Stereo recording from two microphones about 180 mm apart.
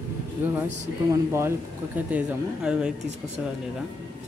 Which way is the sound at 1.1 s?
15° right (ahead or behind).